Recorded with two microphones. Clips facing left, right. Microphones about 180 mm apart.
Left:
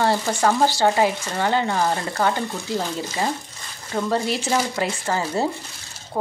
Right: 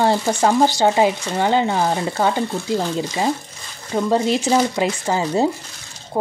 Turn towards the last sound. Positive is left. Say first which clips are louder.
# right 4 dB
turn(degrees=-15)  # may be behind; listen again after turning